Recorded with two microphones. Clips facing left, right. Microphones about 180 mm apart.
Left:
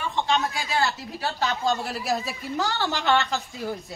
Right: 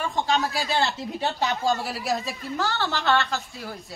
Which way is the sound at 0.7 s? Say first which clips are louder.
Right 1 dB; 25° right (ahead or behind).